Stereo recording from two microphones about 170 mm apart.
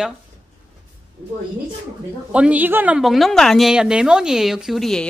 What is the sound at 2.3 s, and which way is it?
A woman's voice, 10° right (ahead or behind).